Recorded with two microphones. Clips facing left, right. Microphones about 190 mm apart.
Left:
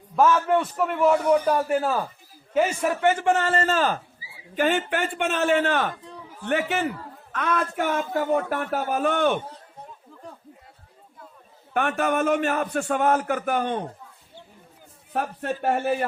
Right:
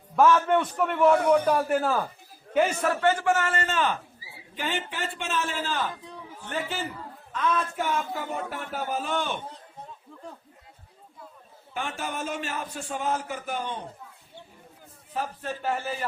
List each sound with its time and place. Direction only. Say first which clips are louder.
0.2 s a man's voice: left 1 dB; 5° left (ahead or behind)
2.8 s a man's voice: left 2 dB; 15° left (ahead or behind); by 4.0 s 40° left (ahead or behind)
4.5 s a man's voice: left 9 dB; 55° left (ahead or behind)
11.7 s a man's voice: left 10 dB; 65° left (ahead or behind)
15.1 s a man's voice: left 5 dB; 60° left (ahead or behind)